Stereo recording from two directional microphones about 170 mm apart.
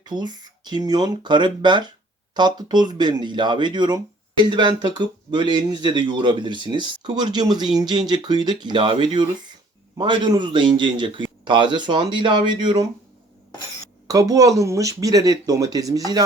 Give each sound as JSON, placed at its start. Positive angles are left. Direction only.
{"t": 0.0, "sound": "speech", "side_deg": -25}
{"t": 14.1, "sound": "speech", "side_deg": -20}